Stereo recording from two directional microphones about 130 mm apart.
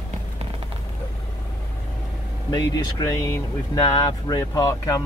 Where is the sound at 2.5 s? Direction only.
30° left (ahead or behind).